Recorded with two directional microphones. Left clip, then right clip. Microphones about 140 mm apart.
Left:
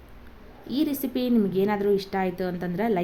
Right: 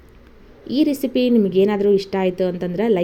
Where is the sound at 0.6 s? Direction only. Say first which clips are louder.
Right 8 dB; 25° right (ahead or behind).